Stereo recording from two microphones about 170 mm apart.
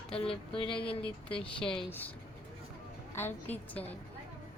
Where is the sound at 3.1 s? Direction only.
10° left (ahead or behind).